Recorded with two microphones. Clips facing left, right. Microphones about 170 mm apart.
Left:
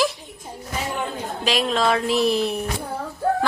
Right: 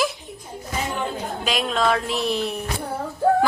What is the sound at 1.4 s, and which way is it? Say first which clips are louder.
A woman's voice: left 2 dB; centre (ahead or behind).